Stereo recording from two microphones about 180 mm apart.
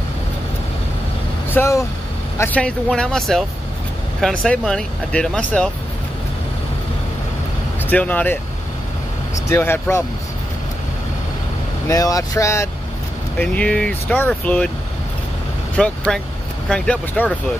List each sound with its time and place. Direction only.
1.5 s speech: 15° left (ahead or behind)
7.8 s speech: 10° left (ahead or behind)
9.5 s speech: 15° left (ahead or behind)
11.9 s speech: 20° left (ahead or behind)
15.7 s speech: 5° left (ahead or behind)